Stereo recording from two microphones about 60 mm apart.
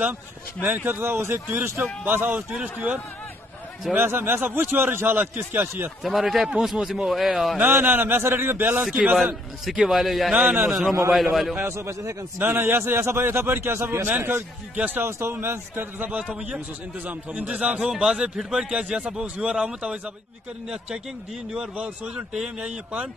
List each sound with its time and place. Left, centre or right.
0.6 s a man's voice: right
1.8 s a man's voice: right
2.5 s a man's voice: centre
3.9 s a man's voice: right
6.0 s a man's voice: centre
7.8 s a man's voice: right
8.9 s a man's voice: centre
11.6 s a man's voice: right
12.4 s a man's voice: right; by 20.0 s centre
21.7 s speech: centre